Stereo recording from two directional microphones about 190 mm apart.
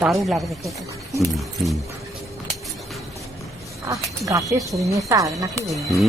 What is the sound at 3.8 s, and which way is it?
Speech, 20° right (ahead or behind).